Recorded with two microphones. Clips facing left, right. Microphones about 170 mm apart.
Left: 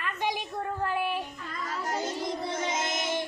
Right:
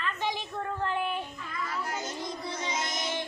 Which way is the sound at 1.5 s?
40° left (ahead or behind).